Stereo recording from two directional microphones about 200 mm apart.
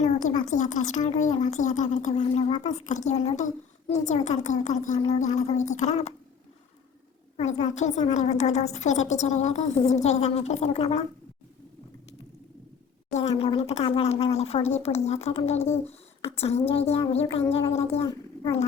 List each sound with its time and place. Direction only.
0.0 s speech: 40° left (ahead or behind)
7.3 s speech: 35° left (ahead or behind)
13.1 s speech: 30° left (ahead or behind)